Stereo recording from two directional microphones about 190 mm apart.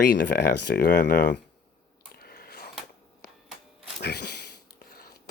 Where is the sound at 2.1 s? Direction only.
55° left (ahead or behind).